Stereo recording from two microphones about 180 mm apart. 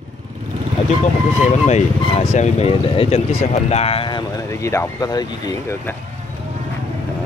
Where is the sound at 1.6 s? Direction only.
35° left (ahead or behind).